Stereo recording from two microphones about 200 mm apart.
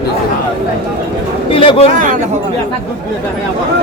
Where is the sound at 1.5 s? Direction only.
25° left (ahead or behind).